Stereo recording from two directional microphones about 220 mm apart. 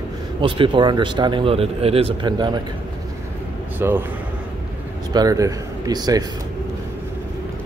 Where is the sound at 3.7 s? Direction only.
10° right (ahead or behind).